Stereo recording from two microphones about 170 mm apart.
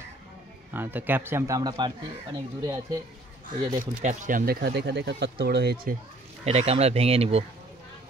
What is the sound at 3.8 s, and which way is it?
Speech, 50° right (ahead or behind).